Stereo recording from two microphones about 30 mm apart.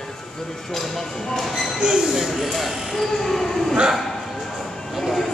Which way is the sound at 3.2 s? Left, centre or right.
Centre.